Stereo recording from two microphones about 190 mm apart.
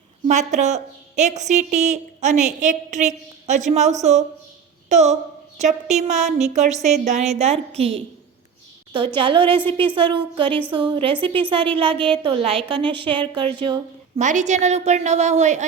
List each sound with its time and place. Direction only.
0.3 s a woman's voice: 40° right (ahead or behind)
9.1 s a woman's voice: 25° right (ahead or behind)
14.2 s speech: 40° right (ahead or behind)